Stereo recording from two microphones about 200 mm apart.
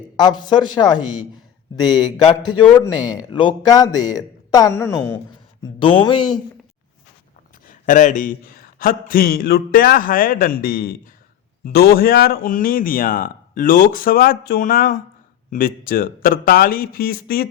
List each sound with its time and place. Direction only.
0.2 s a man's voice: 20° left (ahead or behind)
7.7 s speech: 40° left (ahead or behind)